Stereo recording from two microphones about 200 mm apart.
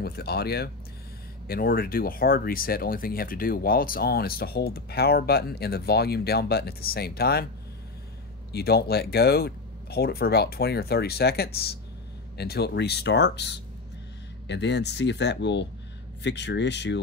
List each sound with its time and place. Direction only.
0.0 s speech: 50° left (ahead or behind)
8.5 s speech: 50° left (ahead or behind)